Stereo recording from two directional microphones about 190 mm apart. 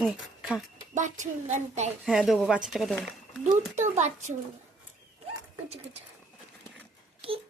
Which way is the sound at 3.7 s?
40° right (ahead or behind).